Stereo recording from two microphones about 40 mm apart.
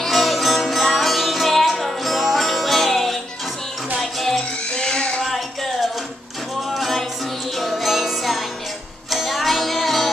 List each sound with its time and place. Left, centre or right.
0.0 s music: centre
4.7 s a sound: left
5.2 s music: centre